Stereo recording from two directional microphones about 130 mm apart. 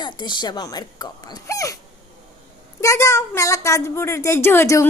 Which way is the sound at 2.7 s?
25° left (ahead or behind).